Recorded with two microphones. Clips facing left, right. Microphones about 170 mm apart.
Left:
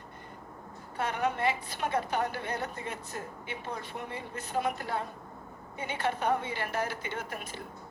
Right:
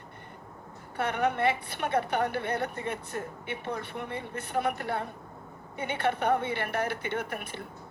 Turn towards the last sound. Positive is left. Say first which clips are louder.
# right 4 dB
turn(degrees=-60)  # may be behind; listen again after turning